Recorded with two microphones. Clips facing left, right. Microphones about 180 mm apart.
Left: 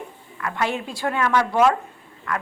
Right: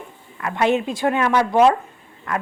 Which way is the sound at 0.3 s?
20° right (ahead or behind).